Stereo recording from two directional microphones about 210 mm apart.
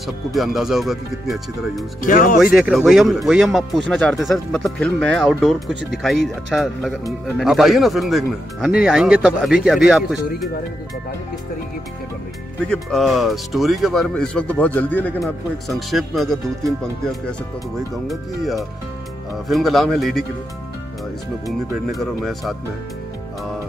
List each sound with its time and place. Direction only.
0.0 s speech: centre (ahead or behind)
2.0 s speech: 40° left (ahead or behind)
2.3 s speech: 5° right (ahead or behind)
12.5 s speech: 5° left (ahead or behind)
18.0 s speech: centre (ahead or behind)
21.5 s speech: centre (ahead or behind)